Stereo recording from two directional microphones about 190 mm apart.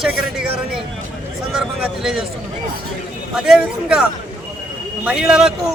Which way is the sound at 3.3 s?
5° right (ahead or behind).